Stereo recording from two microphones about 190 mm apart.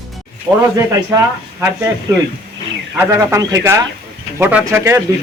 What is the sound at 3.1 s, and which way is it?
Speech, 15° right (ahead or behind).